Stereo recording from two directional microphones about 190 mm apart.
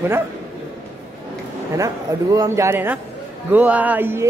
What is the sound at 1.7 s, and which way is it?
A man's voice, 20° right (ahead or behind).